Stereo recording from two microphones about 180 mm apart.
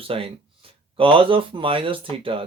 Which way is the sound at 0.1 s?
30° right (ahead or behind).